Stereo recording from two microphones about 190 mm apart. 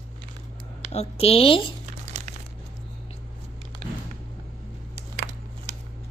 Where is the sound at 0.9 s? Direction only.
35° left (ahead or behind).